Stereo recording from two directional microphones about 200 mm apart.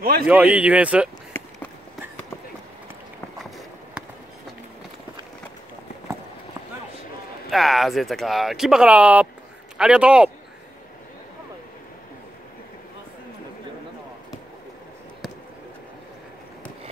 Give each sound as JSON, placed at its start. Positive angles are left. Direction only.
{"t": 0.0, "sound": "speech", "side_deg": -50}
{"t": 0.3, "sound": "speech", "side_deg": -5}
{"t": 3.4, "sound": "a sound", "side_deg": 0}
{"t": 7.4, "sound": "speech", "side_deg": 0}